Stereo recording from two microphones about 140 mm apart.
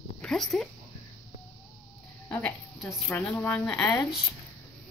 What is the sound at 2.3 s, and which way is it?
A woman's voice, 15° left (ahead or behind).